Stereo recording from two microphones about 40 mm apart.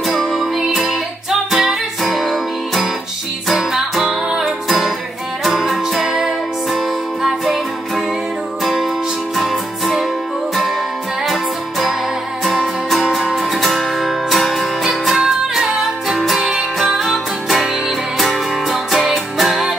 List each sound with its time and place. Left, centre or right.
0.1 s music: centre
4.0 s music: centre
4.6 s music: centre
6.0 s music: centre
9.4 s music: centre
12.4 s music: centre